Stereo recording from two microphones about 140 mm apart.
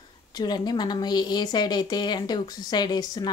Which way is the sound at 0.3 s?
30° left (ahead or behind).